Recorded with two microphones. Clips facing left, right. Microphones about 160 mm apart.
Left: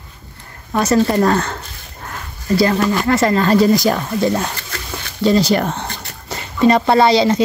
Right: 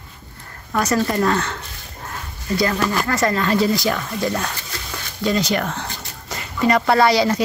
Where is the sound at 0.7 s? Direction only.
30° left (ahead or behind).